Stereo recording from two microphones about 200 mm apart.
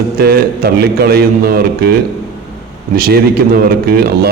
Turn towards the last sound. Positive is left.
turn(degrees=-50)  # may be behind; listen again after turning